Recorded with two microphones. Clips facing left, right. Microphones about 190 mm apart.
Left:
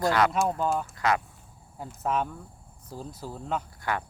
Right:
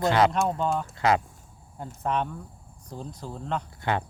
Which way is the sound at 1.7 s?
5° left (ahead or behind).